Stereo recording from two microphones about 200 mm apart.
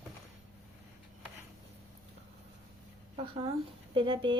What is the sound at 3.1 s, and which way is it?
Speech, 30° right (ahead or behind).